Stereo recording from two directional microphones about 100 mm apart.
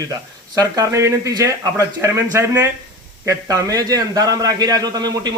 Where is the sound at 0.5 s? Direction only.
40° right (ahead or behind).